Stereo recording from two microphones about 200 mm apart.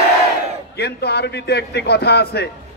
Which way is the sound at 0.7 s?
55° left (ahead or behind).